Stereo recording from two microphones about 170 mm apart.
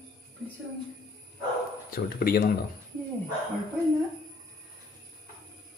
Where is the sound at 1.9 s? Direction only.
60° left (ahead or behind).